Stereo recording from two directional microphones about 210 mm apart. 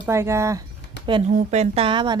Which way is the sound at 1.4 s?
30° right (ahead or behind).